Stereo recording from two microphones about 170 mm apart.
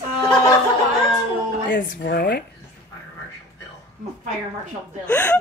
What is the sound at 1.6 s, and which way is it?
Speech, 55° left (ahead or behind).